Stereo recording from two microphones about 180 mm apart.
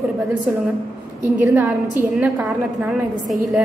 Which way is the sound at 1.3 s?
15° right (ahead or behind).